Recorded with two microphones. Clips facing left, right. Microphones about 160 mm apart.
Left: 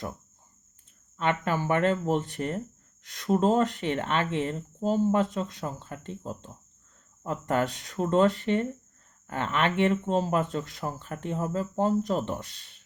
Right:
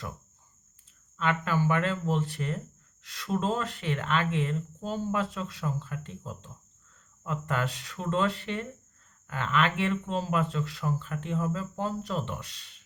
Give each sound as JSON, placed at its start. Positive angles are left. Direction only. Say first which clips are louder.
{"t": 1.1, "sound": "speech", "louder": "left 1 dB", "side_deg": 35}